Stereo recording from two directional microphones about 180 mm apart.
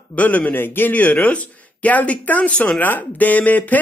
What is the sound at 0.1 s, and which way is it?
A man's voice, 10° left (ahead or behind).